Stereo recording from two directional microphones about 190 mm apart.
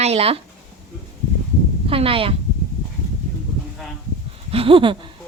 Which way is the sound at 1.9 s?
30° right (ahead or behind).